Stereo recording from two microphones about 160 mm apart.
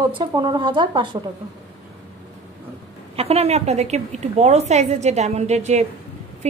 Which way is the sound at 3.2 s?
40° right (ahead or behind).